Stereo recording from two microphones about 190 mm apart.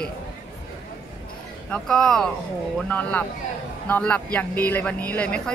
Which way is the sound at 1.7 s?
5° left (ahead or behind).